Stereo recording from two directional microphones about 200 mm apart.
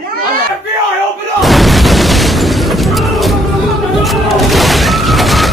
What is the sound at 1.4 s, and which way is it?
Boom, centre (ahead or behind).